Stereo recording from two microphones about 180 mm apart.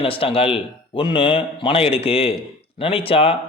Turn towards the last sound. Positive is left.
turn(degrees=30)  # may be behind; listen again after turning